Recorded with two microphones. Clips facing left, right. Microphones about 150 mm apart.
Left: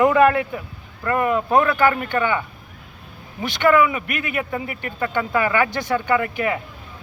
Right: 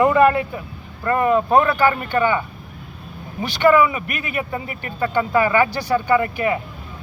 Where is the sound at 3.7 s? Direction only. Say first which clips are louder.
Right 1 dB; 25° right (ahead or behind).